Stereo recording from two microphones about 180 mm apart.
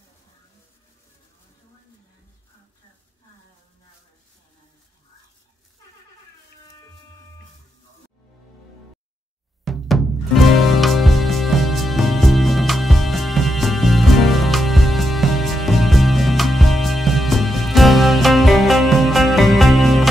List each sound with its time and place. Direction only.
9.7 s music: centre (ahead or behind)